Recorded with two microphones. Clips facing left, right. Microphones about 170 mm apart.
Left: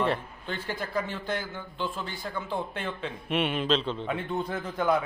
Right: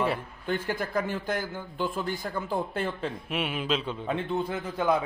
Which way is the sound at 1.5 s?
10° right (ahead or behind).